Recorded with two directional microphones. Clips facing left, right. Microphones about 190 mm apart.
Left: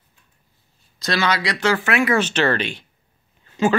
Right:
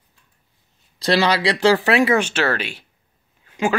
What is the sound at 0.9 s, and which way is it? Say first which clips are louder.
Speech: right 4 dB; 30° right (ahead or behind).